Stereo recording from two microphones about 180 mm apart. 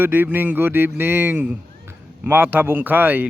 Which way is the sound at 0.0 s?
10° right (ahead or behind).